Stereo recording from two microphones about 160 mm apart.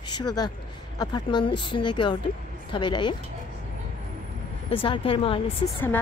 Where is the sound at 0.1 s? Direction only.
25° left (ahead or behind).